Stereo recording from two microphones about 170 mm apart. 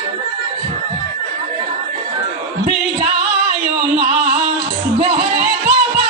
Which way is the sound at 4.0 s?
40° right (ahead or behind).